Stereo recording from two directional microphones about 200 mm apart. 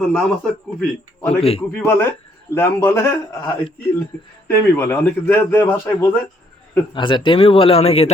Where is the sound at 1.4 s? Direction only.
30° left (ahead or behind).